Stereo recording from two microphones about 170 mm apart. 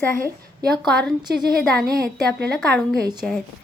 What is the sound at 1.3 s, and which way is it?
A woman's voice, 65° right (ahead or behind).